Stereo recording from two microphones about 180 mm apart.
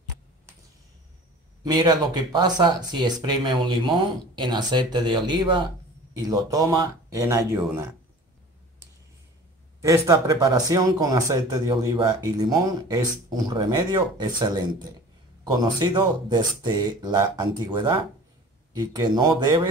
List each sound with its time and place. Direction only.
1.6 s speech: 20° right (ahead or behind)
9.8 s speech: 15° right (ahead or behind)